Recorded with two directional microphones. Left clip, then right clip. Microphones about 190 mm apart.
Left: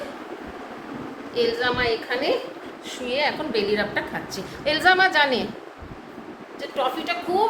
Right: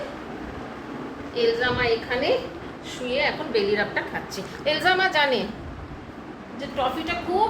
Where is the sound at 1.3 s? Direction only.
20° left (ahead or behind).